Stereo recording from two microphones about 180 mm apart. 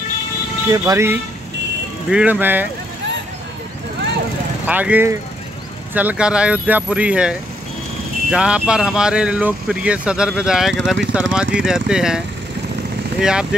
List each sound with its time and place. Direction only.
0.7 s speech: 15° right (ahead or behind)
4.6 s speech: 10° right (ahead or behind)
13.2 s speech: 5° right (ahead or behind)